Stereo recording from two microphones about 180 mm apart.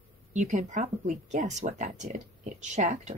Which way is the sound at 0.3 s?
40° right (ahead or behind).